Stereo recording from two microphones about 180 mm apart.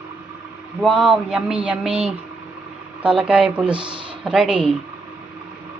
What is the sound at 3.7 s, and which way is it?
Speech, 25° right (ahead or behind).